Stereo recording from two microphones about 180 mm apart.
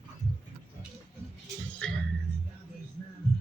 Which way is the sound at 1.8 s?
5° left (ahead or behind).